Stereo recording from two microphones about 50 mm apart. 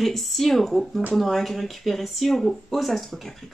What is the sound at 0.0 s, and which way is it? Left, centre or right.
Speech, centre.